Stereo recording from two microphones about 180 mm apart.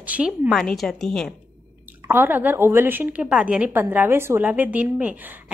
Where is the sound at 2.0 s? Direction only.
10° right (ahead or behind).